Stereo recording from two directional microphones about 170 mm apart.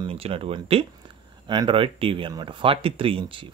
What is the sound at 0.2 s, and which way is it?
Speech, 35° right (ahead or behind).